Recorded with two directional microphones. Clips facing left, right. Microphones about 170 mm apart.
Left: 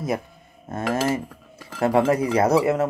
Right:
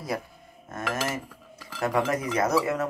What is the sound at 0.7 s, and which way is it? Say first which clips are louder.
Speech: left 7 dB; 30° left (ahead or behind).